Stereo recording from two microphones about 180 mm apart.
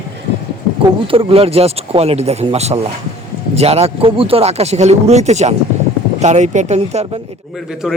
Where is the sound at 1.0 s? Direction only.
30° right (ahead or behind).